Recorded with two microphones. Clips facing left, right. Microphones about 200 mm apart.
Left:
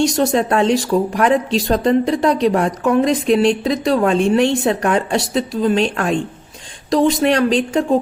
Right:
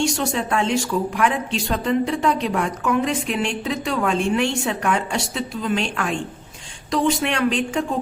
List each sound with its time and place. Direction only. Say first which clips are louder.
0.2 s a woman's voice: left 7 dB; 40° left (ahead or behind)